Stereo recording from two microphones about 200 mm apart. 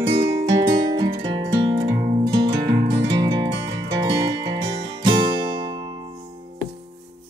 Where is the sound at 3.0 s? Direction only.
20° right (ahead or behind).